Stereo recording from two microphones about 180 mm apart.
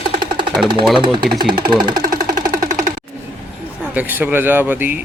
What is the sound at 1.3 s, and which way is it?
Speech, 25° right (ahead or behind).